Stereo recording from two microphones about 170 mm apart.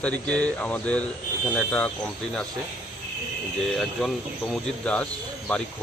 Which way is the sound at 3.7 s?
Centre (ahead or behind).